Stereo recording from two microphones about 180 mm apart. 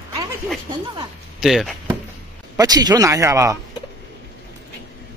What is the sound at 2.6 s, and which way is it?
Speech, 20° right (ahead or behind).